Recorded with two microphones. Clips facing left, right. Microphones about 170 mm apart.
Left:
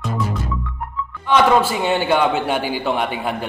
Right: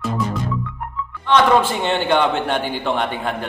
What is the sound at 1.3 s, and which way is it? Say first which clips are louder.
A man's voice: even; 5° left (ahead or behind).